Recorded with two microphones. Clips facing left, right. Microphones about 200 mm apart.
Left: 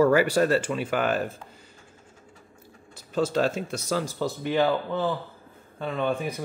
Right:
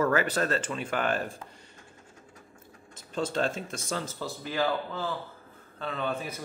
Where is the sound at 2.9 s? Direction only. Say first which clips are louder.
Left 6 dB; 5° left (ahead or behind).